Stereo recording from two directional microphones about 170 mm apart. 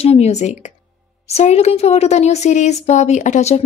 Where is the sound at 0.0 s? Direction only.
40° left (ahead or behind).